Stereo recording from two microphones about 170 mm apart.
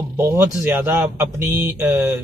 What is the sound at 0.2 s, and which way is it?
Speech, 15° right (ahead or behind).